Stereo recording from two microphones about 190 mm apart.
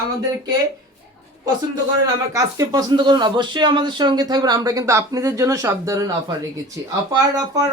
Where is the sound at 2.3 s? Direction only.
20° right (ahead or behind).